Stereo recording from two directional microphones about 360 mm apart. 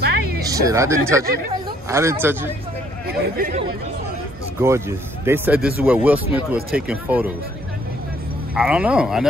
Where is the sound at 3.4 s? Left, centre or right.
Right.